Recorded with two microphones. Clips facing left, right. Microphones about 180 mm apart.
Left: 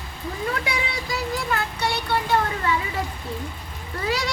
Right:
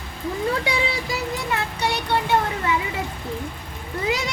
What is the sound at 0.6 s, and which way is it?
Speech, 25° right (ahead or behind).